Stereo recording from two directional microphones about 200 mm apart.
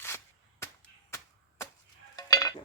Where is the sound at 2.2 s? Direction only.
20° left (ahead or behind).